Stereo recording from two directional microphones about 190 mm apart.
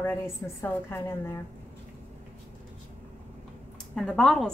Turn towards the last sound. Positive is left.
turn(degrees=0)  # may be behind; listen again after turning